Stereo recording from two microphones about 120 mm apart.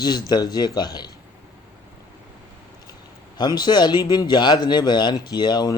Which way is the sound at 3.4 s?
35° left (ahead or behind).